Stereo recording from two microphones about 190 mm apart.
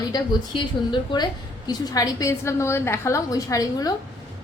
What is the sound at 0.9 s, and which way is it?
A woman's voice, 25° left (ahead or behind).